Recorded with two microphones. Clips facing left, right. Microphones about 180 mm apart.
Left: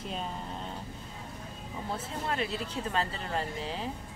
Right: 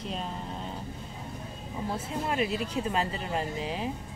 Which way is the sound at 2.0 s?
15° right (ahead or behind).